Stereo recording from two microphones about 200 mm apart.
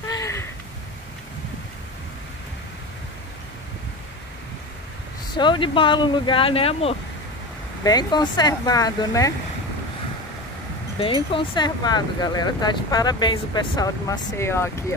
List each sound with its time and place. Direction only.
0.0 s a sound: 15° left (ahead or behind)
5.3 s speech: 25° left (ahead or behind)
11.0 s speech: 25° left (ahead or behind)